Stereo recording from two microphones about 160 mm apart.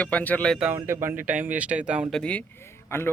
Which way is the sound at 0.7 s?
15° right (ahead or behind).